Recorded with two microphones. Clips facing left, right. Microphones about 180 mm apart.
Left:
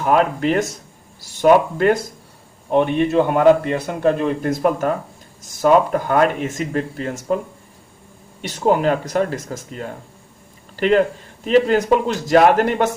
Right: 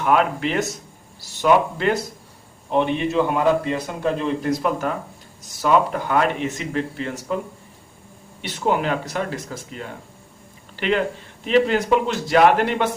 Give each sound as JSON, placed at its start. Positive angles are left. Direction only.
{"t": 0.0, "sound": "a man's voice", "side_deg": 40}
{"t": 8.4, "sound": "a man's voice", "side_deg": 45}